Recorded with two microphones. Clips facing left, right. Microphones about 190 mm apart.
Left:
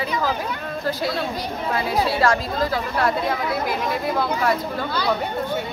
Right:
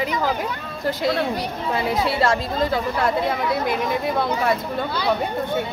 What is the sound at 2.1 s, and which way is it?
Speech, 25° right (ahead or behind).